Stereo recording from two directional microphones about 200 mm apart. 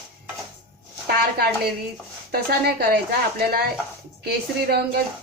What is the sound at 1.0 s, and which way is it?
A woman's voice, 50° right (ahead or behind).